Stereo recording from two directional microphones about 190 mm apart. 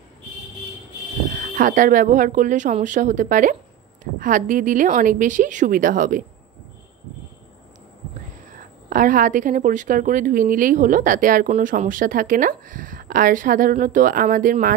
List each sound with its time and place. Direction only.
1.3 s speech: 45° right (ahead or behind)
8.5 s speech: 45° right (ahead or behind)